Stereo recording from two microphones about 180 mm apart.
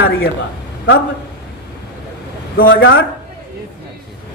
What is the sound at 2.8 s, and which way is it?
Speech, 85° left.